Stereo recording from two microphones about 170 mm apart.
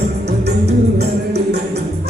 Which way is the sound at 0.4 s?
75° right (ahead or behind).